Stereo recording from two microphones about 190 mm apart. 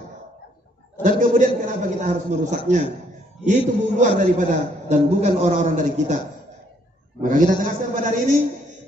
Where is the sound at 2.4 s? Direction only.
40° right (ahead or behind).